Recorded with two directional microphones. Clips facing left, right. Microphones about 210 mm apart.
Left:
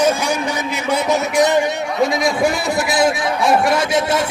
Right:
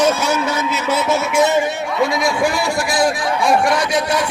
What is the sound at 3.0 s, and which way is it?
Speech, 20° left (ahead or behind).